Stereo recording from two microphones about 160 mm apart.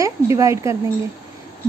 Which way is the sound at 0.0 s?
20° right (ahead or behind).